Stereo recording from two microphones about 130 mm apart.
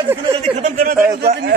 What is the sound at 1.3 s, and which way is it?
Speech, 55° right (ahead or behind).